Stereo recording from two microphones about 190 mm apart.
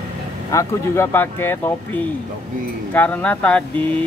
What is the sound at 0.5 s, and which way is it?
Speech, 10° left (ahead or behind).